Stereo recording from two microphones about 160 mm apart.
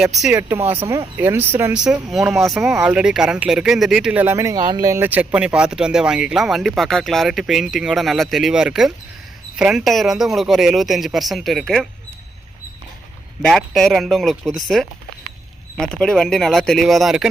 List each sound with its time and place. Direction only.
0.2 s speech: 5° right (ahead or behind)
13.4 s speech: centre (ahead or behind)